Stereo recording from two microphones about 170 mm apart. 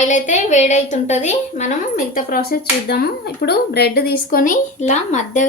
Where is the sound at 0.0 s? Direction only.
45° left (ahead or behind).